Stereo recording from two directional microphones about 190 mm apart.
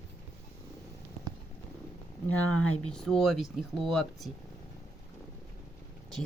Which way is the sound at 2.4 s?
90° left.